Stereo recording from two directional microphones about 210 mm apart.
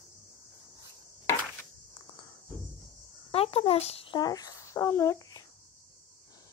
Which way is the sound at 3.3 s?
30° left (ahead or behind).